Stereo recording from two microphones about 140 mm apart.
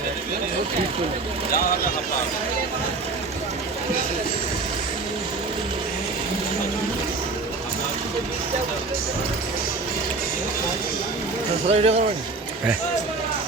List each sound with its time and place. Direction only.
11.7 s speech: 50° right (ahead or behind)